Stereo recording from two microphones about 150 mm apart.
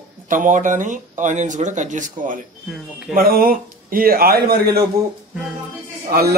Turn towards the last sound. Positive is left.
turn(degrees=-90)